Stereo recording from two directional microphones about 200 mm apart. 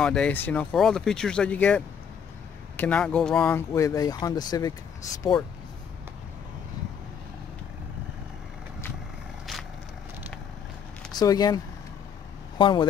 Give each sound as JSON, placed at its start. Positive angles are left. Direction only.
{"t": 0.0, "sound": "speech", "side_deg": 5}
{"t": 2.8, "sound": "speech", "side_deg": 5}
{"t": 11.1, "sound": "speech", "side_deg": 20}